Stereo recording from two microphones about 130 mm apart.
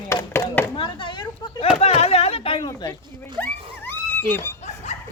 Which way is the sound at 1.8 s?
55° left (ahead or behind).